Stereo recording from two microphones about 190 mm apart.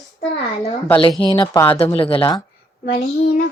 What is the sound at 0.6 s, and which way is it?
Speech, 15° left (ahead or behind).